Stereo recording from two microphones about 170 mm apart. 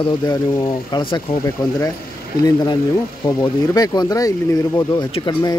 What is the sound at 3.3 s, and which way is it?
A man's voice, 20° left (ahead or behind).